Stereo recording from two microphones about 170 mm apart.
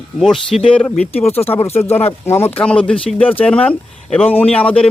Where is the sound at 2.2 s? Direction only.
15° left (ahead or behind).